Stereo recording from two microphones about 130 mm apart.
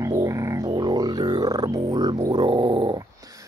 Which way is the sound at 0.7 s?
30° right (ahead or behind).